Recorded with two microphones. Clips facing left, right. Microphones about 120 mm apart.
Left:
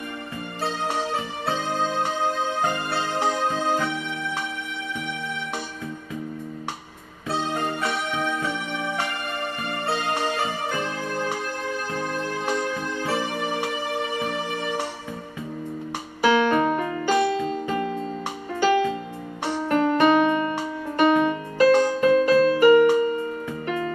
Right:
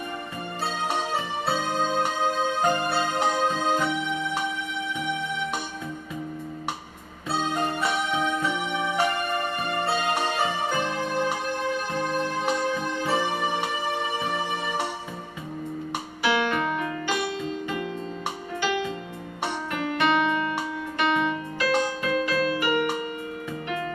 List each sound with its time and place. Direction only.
16.2 s music: 40° left (ahead or behind)